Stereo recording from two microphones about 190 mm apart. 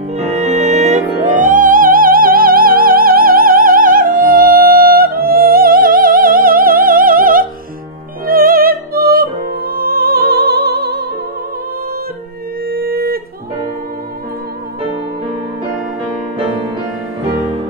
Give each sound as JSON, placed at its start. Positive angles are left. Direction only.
{"t": 0.2, "sound": "music", "side_deg": -35}
{"t": 12.6, "sound": "music", "side_deg": -50}